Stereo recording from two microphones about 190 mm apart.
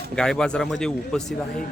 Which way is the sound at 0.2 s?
5° left (ahead or behind).